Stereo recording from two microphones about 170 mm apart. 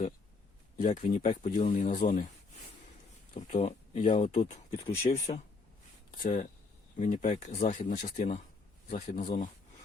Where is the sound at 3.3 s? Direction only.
40° left (ahead or behind).